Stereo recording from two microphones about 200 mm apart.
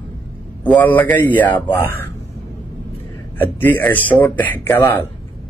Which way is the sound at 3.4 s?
10° left (ahead or behind).